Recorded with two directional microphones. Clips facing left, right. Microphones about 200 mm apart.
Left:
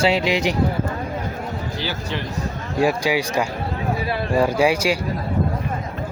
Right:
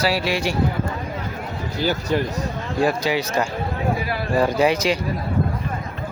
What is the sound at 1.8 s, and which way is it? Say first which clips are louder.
Speech: right 11 dB; 45° right (ahead or behind).